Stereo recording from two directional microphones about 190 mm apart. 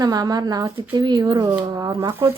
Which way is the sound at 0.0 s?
20° right (ahead or behind).